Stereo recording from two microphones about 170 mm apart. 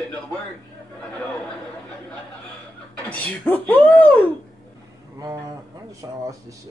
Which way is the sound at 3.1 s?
10° left (ahead or behind).